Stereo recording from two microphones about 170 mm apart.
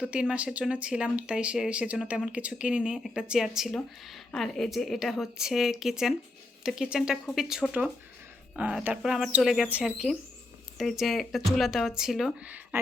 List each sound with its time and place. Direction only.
0.0 s speech: 5° right (ahead or behind)